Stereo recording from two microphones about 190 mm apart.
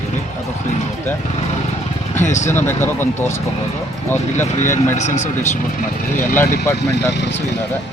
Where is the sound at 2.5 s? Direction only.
10° left (ahead or behind).